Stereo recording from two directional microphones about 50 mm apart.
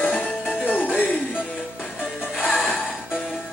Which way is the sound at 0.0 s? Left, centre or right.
Left.